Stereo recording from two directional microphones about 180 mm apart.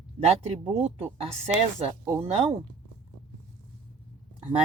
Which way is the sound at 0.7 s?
35° right (ahead or behind).